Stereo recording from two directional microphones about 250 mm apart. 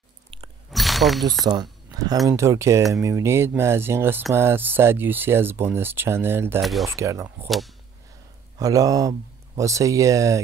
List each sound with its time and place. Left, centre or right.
0.7 s a sound: centre
1.4 s speech: centre
6.9 s speech: centre
7.4 s speech: centre
8.5 s speech: centre